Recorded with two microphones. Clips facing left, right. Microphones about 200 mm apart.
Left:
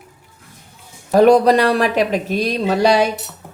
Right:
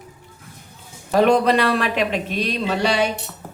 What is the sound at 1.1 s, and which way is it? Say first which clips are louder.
Speech: left 5 dB; 40° left (ahead or behind).